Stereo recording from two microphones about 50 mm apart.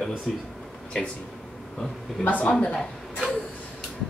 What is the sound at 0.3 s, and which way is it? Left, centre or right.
Speech, centre.